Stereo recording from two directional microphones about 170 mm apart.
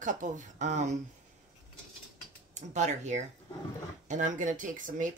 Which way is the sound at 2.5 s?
45° right (ahead or behind).